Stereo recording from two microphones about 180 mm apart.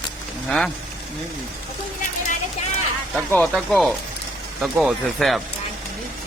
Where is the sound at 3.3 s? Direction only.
5° left (ahead or behind).